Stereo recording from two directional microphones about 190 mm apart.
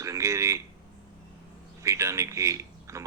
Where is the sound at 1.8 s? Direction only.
15° right (ahead or behind).